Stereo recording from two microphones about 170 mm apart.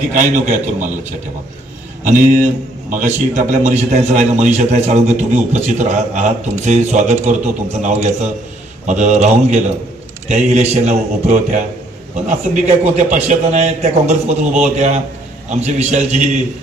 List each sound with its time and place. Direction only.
0.1 s a man's voice: 45° right (ahead or behind)
2.0 s a man's voice: 50° right (ahead or behind)
3.5 s a man's voice: 40° right (ahead or behind)